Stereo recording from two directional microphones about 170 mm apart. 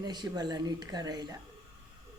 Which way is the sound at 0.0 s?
25° right (ahead or behind).